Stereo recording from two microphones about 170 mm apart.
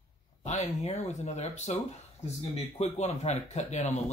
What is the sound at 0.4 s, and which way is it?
Speech, 40° left (ahead or behind).